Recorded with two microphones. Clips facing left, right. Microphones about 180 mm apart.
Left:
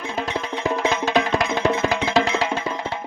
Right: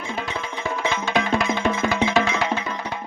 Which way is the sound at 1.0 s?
40° left (ahead or behind).